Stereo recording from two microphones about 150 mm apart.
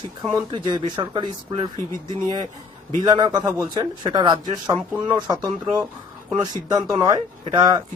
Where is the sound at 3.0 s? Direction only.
25° right (ahead or behind).